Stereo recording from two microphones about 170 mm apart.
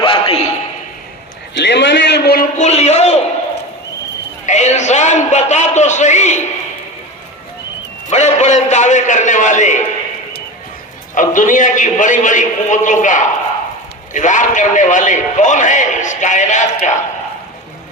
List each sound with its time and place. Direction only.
0.0 s a sound: 30° left (ahead or behind)
1.5 s a sound: 90° left; by 2.5 s 65° left (ahead or behind)
2.6 s a man's voice: 40° left (ahead or behind)
4.4 s a man's voice: 45° left (ahead or behind)
8.1 s a man's voice: 45° left (ahead or behind)
11.1 s a man's voice: 50° left (ahead or behind)